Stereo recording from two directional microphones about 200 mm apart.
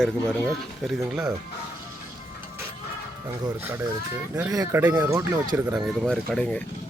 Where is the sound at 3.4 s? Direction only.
10° right (ahead or behind).